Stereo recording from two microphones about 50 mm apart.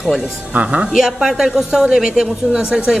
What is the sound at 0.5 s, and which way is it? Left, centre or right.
Speech, right.